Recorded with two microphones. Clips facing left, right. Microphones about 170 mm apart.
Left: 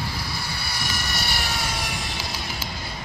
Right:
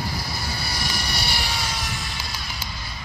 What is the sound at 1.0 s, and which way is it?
Vehicle, 50° left (ahead or behind).